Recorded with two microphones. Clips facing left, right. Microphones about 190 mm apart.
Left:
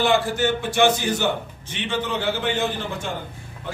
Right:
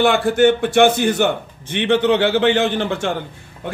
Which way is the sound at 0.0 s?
60° right (ahead or behind).